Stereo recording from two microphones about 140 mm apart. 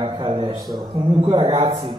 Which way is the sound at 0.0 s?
35° right (ahead or behind).